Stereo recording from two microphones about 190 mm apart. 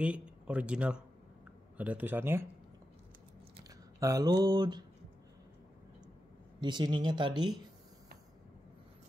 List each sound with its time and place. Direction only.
0.0 s speech: 5° right (ahead or behind)
4.0 s speech: 20° right (ahead or behind)
6.6 s speech: 25° right (ahead or behind)